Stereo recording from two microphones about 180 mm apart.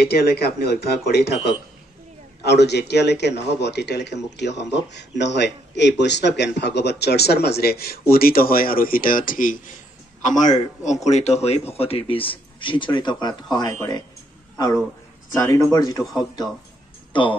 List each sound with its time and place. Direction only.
0.0 s speech: 60° left (ahead or behind)
2.4 s a man's voice: 70° left (ahead or behind); by 14.0 s 20° left (ahead or behind)
15.4 s speech: 20° left (ahead or behind)
17.1 s speech: 25° left (ahead or behind)